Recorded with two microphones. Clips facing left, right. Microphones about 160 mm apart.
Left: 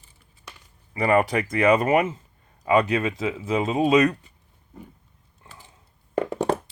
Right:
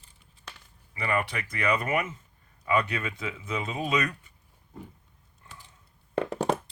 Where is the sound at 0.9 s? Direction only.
40° left (ahead or behind).